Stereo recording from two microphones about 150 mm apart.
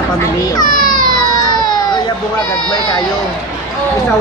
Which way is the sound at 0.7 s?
65° left (ahead or behind).